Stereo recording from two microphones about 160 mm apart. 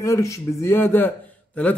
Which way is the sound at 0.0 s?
20° left (ahead or behind).